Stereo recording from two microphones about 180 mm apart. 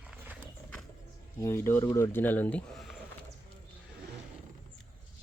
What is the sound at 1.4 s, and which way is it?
Speech, 15° left (ahead or behind).